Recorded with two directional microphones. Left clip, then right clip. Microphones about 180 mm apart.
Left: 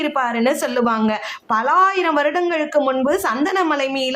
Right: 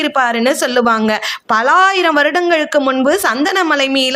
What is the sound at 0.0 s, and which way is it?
A woman's voice, 20° right (ahead or behind).